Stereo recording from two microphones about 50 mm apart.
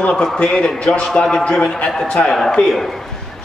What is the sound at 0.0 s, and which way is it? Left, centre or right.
A man's voice, left.